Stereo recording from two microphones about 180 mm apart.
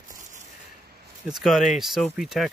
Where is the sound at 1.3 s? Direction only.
Centre (ahead or behind).